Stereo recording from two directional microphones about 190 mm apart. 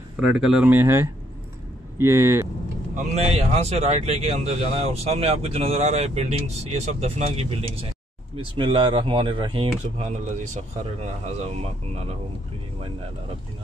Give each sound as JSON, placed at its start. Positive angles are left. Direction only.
{"t": 0.2, "sound": "speech", "side_deg": -5}
{"t": 3.0, "sound": "a man's voice", "side_deg": -35}